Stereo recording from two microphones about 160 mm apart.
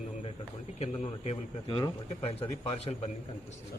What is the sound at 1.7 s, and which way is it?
Speech, 30° left (ahead or behind).